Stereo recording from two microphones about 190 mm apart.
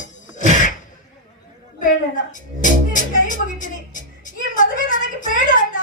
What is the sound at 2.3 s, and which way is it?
Speech, 45° left (ahead or behind).